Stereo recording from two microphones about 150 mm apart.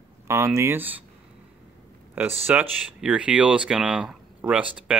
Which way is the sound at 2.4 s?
10° right (ahead or behind).